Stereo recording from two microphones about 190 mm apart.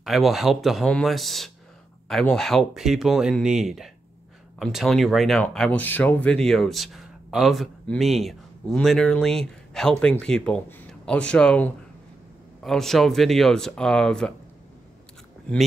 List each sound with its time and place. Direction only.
0.0 s speech: centre (ahead or behind)